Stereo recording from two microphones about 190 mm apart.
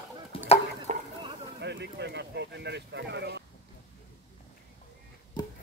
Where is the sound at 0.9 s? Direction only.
35° right (ahead or behind).